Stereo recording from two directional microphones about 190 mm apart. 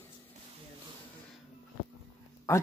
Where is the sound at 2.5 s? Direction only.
15° left (ahead or behind).